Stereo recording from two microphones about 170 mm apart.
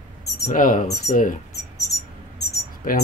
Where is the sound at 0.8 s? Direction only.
20° left (ahead or behind).